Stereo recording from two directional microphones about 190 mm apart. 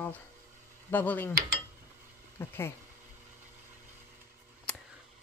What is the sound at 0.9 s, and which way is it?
Speech, 10° left (ahead or behind).